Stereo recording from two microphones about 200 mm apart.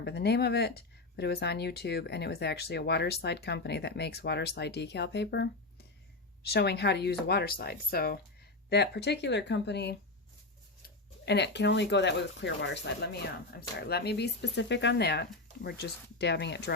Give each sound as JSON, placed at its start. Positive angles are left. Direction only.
{"t": 0.0, "sound": "speech", "side_deg": 55}
{"t": 13.5, "sound": "speech", "side_deg": 50}